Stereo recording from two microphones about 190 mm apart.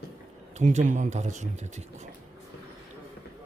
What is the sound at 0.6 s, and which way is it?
Speech, 40° right (ahead or behind).